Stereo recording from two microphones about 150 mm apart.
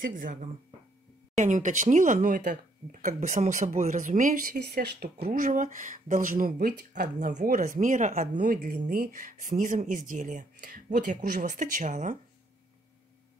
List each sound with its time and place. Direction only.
0.1 s speech: 60° right (ahead or behind)
8.8 s speech: 70° right (ahead or behind); by 12.2 s 55° right (ahead or behind)